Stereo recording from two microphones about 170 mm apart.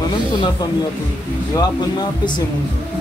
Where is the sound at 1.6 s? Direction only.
25° left (ahead or behind).